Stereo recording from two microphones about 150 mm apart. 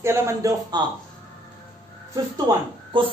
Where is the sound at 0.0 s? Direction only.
20° right (ahead or behind).